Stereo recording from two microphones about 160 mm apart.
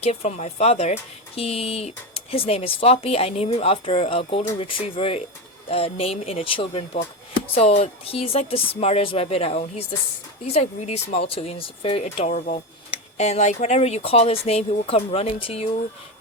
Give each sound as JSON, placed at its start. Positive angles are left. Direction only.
{"t": 0.0, "sound": "speech", "side_deg": 40}